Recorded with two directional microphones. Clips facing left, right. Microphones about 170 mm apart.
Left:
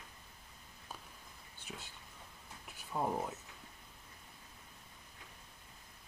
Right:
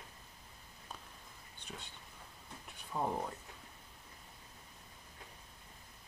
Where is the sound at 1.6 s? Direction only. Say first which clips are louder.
Even; 5° left (ahead or behind).